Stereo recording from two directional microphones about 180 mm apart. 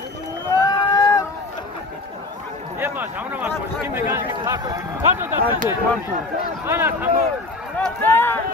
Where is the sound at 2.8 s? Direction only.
10° right (ahead or behind).